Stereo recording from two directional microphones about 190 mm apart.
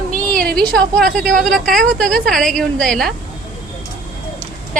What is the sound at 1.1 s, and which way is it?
A woman's voice, 5° left (ahead or behind).